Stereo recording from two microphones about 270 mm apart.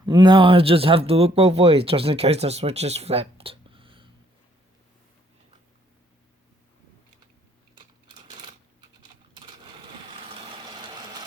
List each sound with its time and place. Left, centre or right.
0.0 s speech: centre
9.4 s sewing machine: centre